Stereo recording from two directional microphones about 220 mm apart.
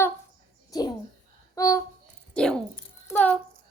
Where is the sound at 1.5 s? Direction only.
15° left (ahead or behind).